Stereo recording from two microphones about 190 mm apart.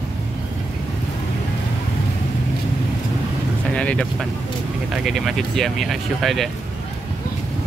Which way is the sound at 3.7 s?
5° left (ahead or behind).